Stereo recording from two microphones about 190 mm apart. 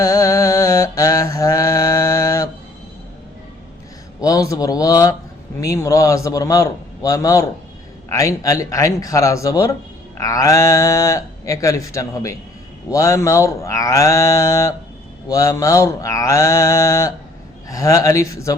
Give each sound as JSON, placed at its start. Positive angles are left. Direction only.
{"t": 0.0, "sound": "mantra", "side_deg": 15}
{"t": 4.2, "sound": "speech", "side_deg": 15}